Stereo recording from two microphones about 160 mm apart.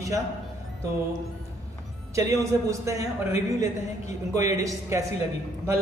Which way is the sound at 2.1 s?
20° right (ahead or behind).